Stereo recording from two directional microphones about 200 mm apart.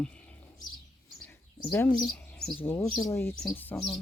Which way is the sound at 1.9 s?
Centre (ahead or behind).